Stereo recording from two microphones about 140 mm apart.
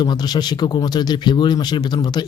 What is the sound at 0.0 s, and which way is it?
Speech, 30° left (ahead or behind).